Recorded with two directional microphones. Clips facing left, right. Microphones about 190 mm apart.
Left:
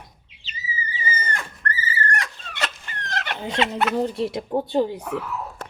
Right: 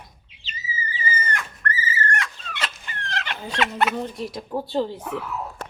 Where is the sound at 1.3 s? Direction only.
35° left (ahead or behind).